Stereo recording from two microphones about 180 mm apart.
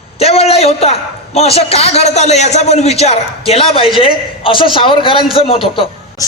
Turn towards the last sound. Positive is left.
turn(degrees=30)  # may be behind; listen again after turning